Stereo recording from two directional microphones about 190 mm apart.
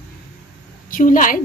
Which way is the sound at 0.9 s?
45° left (ahead or behind).